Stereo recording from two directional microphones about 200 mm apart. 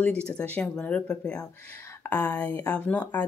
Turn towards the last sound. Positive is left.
turn(degrees=5)  # may be behind; listen again after turning